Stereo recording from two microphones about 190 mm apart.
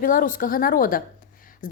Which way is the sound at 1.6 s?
45° left (ahead or behind).